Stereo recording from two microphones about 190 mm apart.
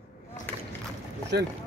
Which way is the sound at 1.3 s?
55° right (ahead or behind).